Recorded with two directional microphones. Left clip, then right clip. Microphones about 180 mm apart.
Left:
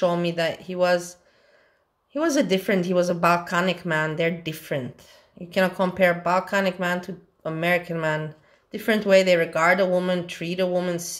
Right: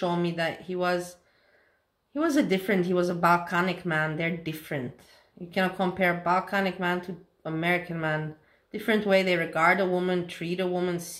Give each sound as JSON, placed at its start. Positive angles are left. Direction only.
{"t": 0.0, "sound": "a woman's voice", "side_deg": 40}
{"t": 2.1, "sound": "a woman's voice", "side_deg": 40}